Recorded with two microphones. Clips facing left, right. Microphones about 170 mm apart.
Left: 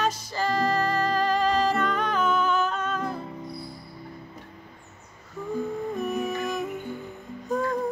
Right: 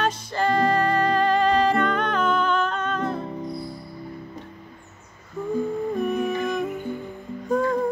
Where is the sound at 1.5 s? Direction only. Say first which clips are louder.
Right 4 dB; 5° left (ahead or behind).